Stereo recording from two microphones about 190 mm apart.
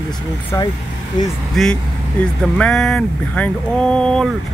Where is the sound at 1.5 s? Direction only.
Centre (ahead or behind).